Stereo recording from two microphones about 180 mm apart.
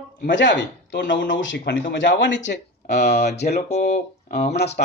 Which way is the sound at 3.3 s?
65° left (ahead or behind).